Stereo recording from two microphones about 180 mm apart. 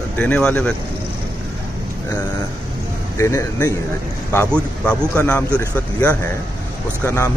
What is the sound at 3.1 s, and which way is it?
A man's voice, 15° left (ahead or behind).